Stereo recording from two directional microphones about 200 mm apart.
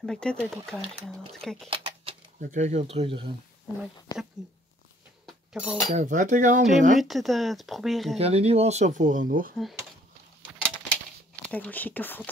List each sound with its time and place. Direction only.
0.0 s speech: 5° left (ahead or behind)
1.7 s speech: 30° right (ahead or behind)
4.1 s speech: 20° left (ahead or behind)
5.2 s a sound: 5° right (ahead or behind)
5.9 s speech: 40° right (ahead or behind)
7.0 s speech: centre (ahead or behind)
8.2 s speech: 30° right (ahead or behind)
11.4 s speech: 5° left (ahead or behind)